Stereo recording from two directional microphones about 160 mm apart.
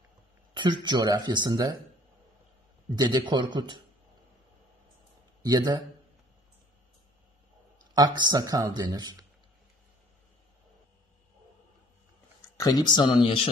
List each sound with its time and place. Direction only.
0.8 s speech: 25° right (ahead or behind)
3.0 s speech: 25° right (ahead or behind)
5.4 s speech: 25° right (ahead or behind)
7.9 s speech: 25° right (ahead or behind)
12.5 s speech: 25° left (ahead or behind)